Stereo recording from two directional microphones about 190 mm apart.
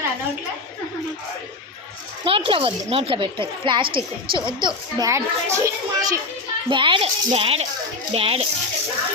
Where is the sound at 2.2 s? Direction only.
30° right (ahead or behind).